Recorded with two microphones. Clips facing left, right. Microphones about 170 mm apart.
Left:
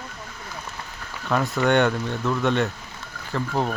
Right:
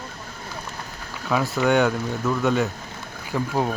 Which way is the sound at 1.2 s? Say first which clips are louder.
Even; 5° right (ahead or behind).